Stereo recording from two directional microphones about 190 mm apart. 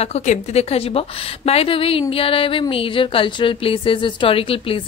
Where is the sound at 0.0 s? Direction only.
35° left (ahead or behind).